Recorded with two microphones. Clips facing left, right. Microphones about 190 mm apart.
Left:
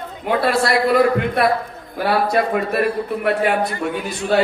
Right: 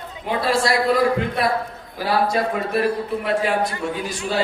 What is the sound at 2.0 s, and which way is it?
Speech, 60° left (ahead or behind).